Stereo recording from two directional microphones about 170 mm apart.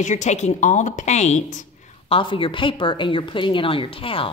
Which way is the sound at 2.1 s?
30° left (ahead or behind).